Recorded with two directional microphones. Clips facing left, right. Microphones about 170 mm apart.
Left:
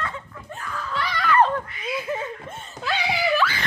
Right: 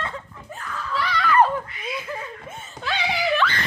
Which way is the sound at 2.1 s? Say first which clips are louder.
Left 7 dB; 20° left (ahead or behind).